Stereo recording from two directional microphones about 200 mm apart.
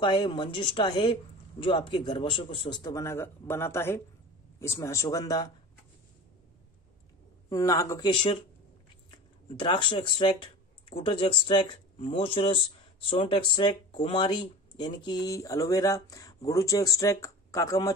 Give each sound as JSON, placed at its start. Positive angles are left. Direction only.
{"t": 0.0, "sound": "a man's voice", "side_deg": 20}
{"t": 7.4, "sound": "a man's voice", "side_deg": 15}